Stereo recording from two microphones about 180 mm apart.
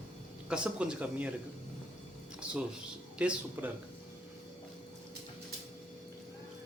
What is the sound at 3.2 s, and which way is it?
Speech, 5° right (ahead or behind).